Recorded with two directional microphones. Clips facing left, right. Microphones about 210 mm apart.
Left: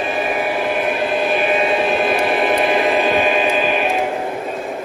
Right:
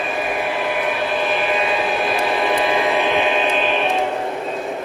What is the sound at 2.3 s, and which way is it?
Choir, 20° left (ahead or behind).